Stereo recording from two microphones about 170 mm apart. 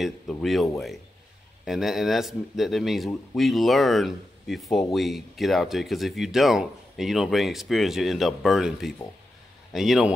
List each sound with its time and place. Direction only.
0.0 s speech: centre (ahead or behind)